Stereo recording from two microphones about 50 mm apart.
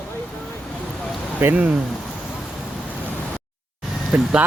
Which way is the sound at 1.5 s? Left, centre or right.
Right.